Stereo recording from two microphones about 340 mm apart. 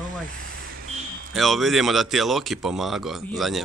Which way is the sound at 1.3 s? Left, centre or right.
Centre.